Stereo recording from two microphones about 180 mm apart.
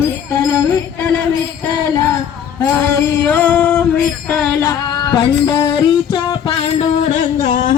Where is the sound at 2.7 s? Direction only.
10° left (ahead or behind).